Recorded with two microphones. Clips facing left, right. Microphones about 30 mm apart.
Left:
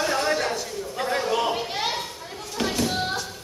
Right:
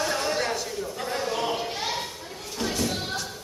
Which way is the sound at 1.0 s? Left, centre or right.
Left.